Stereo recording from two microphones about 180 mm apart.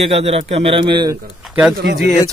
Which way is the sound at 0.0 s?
35° right (ahead or behind).